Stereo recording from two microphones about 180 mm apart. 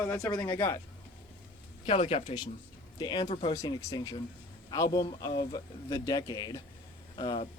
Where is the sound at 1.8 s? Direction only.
30° left (ahead or behind).